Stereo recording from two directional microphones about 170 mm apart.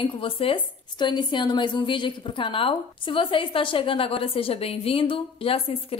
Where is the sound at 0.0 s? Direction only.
30° left (ahead or behind).